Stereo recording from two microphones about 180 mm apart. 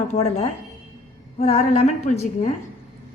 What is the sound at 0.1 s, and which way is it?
Speech, 40° left (ahead or behind).